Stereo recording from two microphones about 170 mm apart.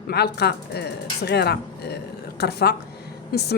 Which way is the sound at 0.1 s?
75° left (ahead or behind).